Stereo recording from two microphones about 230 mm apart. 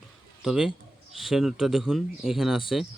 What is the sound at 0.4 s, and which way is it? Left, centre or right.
A man's voice, centre.